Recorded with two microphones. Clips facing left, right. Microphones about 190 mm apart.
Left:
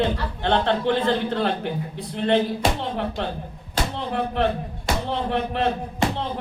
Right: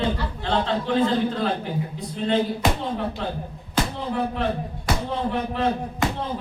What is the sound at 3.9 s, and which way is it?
Speech, 65° left (ahead or behind).